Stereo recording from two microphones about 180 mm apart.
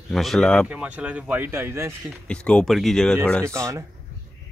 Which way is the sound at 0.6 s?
5° right (ahead or behind).